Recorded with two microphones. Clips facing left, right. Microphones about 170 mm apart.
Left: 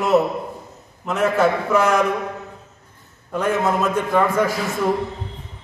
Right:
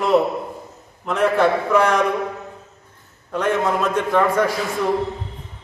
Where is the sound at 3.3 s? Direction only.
10° left (ahead or behind).